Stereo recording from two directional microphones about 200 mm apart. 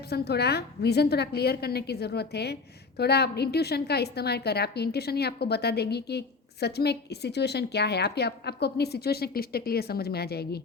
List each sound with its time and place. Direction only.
0.1 s a woman's voice: 55° left (ahead or behind)